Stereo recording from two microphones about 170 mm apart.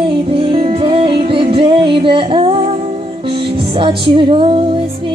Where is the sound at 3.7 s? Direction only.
30° right (ahead or behind).